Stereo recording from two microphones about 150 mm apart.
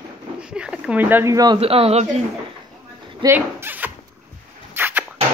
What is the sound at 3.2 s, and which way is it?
Zipper, 15° right (ahead or behind).